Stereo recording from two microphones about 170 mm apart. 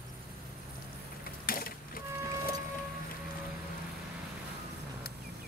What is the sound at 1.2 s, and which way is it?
Mechanisms, 60° left (ahead or behind).